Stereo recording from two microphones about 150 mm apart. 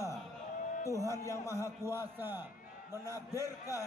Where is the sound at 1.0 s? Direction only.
20° right (ahead or behind).